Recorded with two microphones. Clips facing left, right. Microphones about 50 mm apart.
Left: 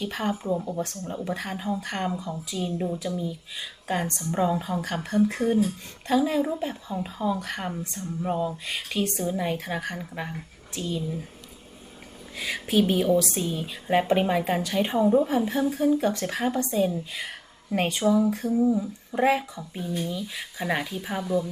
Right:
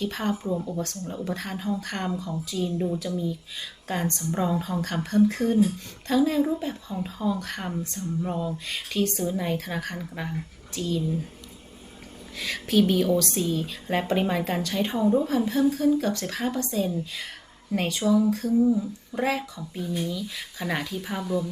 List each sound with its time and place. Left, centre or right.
0.0 s speech: centre
12.4 s speech: centre